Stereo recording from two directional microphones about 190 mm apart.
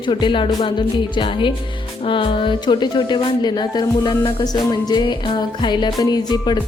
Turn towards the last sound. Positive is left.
turn(degrees=20)  # may be behind; listen again after turning